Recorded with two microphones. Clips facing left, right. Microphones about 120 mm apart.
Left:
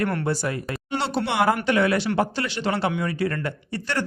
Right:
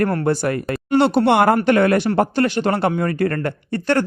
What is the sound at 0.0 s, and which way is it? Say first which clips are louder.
Speech: right 6 dB; 40° right (ahead or behind).